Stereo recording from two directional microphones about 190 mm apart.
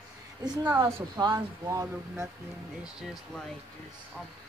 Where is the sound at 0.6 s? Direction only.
10° right (ahead or behind).